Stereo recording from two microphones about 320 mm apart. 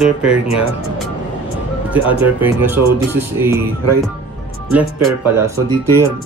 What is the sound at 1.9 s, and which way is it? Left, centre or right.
Speech, centre.